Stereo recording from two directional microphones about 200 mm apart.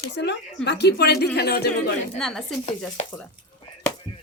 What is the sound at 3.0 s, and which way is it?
Speech, 35° left (ahead or behind).